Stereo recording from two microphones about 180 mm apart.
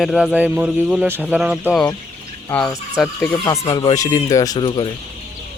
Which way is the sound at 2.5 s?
10° left (ahead or behind).